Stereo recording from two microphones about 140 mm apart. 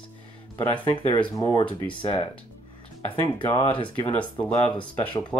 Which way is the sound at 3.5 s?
35° left (ahead or behind).